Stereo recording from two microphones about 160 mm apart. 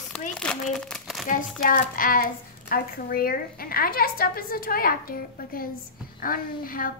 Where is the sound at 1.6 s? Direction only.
60° left (ahead or behind).